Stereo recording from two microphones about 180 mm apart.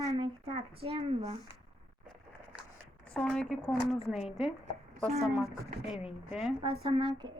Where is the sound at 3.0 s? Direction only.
5° left (ahead or behind).